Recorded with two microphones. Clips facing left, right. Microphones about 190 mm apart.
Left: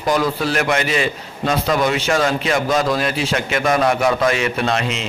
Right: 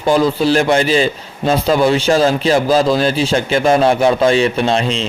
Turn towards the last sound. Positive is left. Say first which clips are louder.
# right 5 dB
turn(degrees=-30)  # may be behind; listen again after turning